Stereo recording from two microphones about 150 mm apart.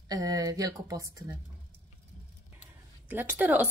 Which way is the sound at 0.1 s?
25° right (ahead or behind).